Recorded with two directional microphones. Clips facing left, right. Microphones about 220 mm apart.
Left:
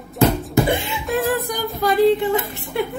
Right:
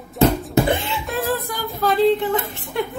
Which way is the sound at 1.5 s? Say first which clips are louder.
Left 1 dB; 15° left (ahead or behind).